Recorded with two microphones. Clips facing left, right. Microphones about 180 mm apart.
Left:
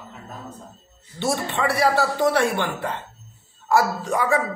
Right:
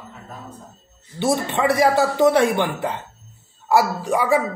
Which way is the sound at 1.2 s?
15° right (ahead or behind).